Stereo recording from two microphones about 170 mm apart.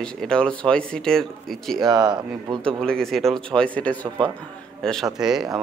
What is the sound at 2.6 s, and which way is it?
Speech, 5° left (ahead or behind).